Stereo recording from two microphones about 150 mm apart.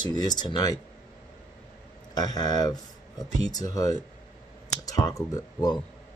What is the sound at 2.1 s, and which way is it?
Speech, 25° left (ahead or behind).